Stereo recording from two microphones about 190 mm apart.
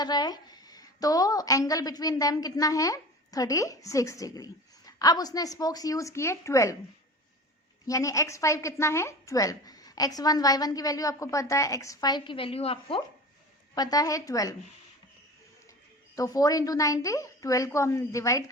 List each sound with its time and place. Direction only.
0.0 s a woman's voice: 20° left (ahead or behind)
7.9 s a woman's voice: 15° left (ahead or behind)
13.7 s a woman's voice: 20° left (ahead or behind)
16.1 s a woman's voice: 20° left (ahead or behind)